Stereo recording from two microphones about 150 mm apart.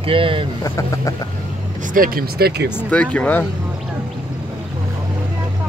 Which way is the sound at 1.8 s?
65° right (ahead or behind).